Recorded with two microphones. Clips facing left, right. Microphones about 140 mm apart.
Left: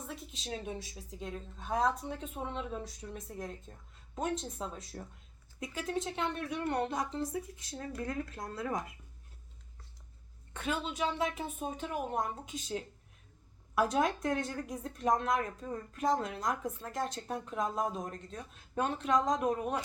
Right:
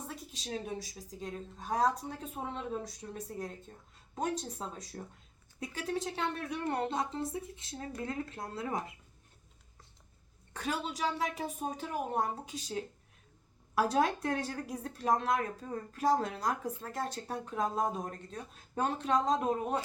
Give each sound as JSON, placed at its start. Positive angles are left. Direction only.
{"t": 0.8, "sound": "speech", "side_deg": -40}
{"t": 10.5, "sound": "speech", "side_deg": -35}
{"t": 13.8, "sound": "speech", "side_deg": -35}